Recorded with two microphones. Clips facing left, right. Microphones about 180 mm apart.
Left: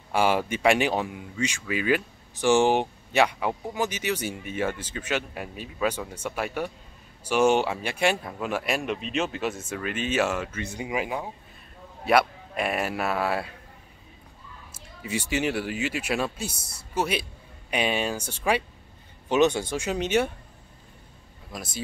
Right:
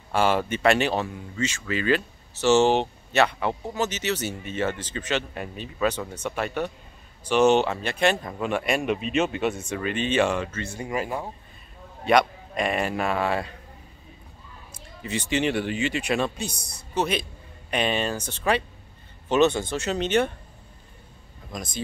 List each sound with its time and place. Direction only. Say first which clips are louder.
0.1 s a man's voice: right 1 dB; 10° left (ahead or behind)
10.6 s a man's voice: even; 15° left (ahead or behind)
11.1 s speech: right 1 dB; centre (ahead or behind)
14.7 s a man's voice: even; 10° left (ahead or behind)
21.5 s a man's voice: right 2 dB; 5° left (ahead or behind)